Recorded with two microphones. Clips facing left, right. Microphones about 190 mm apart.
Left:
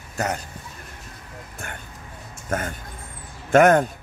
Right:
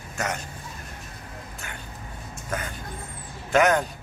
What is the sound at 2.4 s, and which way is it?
Speech, 50° left (ahead or behind).